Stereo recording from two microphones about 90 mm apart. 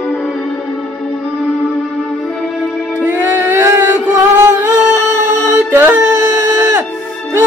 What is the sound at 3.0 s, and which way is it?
Music, 20° right (ahead or behind).